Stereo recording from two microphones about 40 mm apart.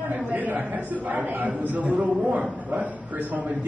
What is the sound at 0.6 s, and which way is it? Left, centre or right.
A man's voice, right.